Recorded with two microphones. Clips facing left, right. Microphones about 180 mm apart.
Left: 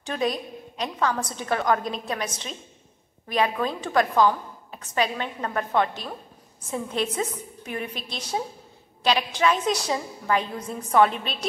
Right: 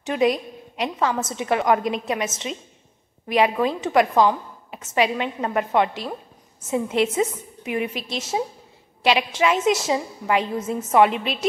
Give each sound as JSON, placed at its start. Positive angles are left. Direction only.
{"t": 0.0, "sound": "a woman's voice", "side_deg": -20}